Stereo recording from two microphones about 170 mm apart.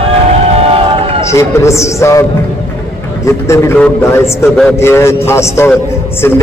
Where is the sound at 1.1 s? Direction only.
15° left (ahead or behind).